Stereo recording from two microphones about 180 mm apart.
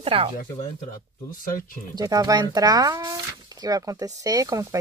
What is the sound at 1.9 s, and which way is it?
Speech, 20° right (ahead or behind).